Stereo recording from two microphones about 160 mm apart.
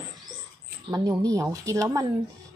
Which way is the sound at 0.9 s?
20° right (ahead or behind).